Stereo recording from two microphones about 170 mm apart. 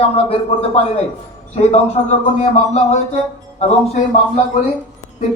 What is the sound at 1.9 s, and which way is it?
A woman's voice, 40° left (ahead or behind).